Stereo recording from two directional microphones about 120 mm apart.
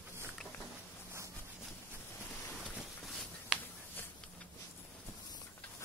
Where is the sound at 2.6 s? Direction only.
Centre (ahead or behind).